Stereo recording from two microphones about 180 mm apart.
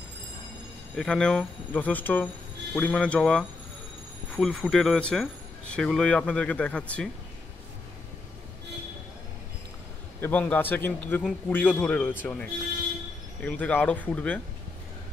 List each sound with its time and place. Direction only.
0.9 s a man's voice: 5° left (ahead or behind)
10.2 s a man's voice: 10° left (ahead or behind)